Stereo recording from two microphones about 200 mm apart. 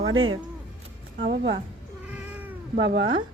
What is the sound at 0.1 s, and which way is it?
Speech, 80° right.